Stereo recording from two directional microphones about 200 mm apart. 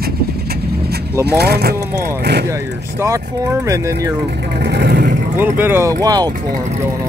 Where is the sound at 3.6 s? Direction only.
15° right (ahead or behind).